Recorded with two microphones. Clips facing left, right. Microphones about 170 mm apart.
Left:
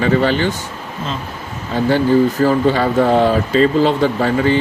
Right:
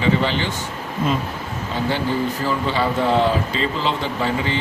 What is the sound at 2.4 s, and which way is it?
Speech, 45° left (ahead or behind).